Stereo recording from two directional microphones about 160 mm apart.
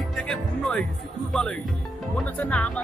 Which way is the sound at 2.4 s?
5° left (ahead or behind).